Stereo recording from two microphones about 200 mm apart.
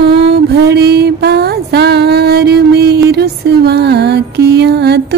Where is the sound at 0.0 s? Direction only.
55° right (ahead or behind).